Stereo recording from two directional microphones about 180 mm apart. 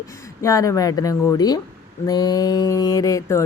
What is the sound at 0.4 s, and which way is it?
A woman's voice, 20° left (ahead or behind).